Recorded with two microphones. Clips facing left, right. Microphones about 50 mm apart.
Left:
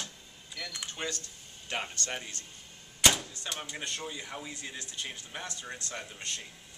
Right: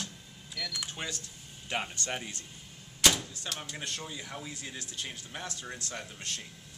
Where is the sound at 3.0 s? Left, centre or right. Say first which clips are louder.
Even; centre.